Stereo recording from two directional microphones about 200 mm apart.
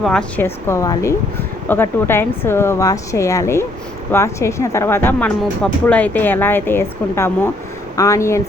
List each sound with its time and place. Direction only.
0.0 s a woman's voice: 5° left (ahead or behind)